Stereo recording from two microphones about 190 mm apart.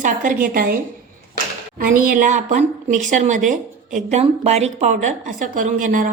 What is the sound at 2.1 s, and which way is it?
Speech, 40° right (ahead or behind).